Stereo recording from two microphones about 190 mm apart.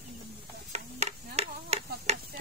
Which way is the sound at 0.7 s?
35° right (ahead or behind).